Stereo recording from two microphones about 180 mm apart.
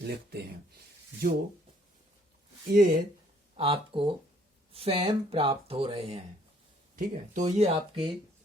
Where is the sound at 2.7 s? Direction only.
50° right (ahead or behind).